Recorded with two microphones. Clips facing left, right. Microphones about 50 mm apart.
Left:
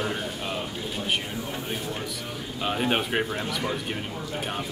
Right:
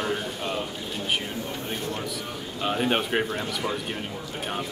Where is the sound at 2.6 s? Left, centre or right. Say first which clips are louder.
Right 1 dB; centre.